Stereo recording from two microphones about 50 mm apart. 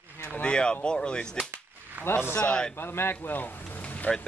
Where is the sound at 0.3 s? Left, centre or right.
Left.